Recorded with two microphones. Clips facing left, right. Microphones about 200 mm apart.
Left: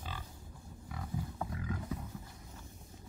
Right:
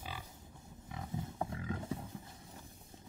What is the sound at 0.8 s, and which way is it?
Roaring cats, 20° right (ahead or behind).